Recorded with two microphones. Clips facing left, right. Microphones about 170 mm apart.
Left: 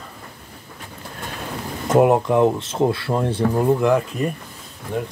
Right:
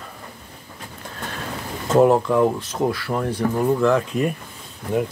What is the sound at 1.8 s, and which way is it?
Speech, 15° left (ahead or behind).